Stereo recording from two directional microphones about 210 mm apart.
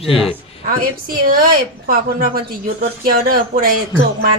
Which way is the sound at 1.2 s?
45° right (ahead or behind).